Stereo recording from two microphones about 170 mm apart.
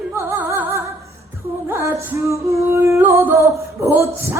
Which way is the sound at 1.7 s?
15° right (ahead or behind).